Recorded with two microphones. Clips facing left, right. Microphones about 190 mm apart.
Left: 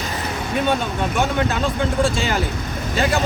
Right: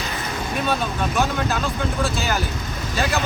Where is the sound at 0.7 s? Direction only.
25° left (ahead or behind).